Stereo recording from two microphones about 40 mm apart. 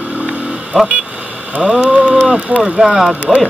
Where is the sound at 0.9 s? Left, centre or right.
Right.